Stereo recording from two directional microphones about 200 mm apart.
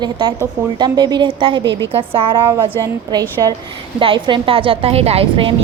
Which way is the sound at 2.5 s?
15° right (ahead or behind).